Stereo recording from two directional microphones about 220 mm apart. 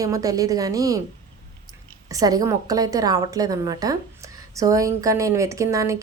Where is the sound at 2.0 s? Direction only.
15° right (ahead or behind).